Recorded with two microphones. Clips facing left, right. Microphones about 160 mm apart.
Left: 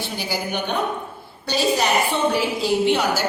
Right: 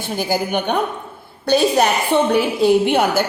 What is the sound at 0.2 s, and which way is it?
A woman's voice, 50° right (ahead or behind).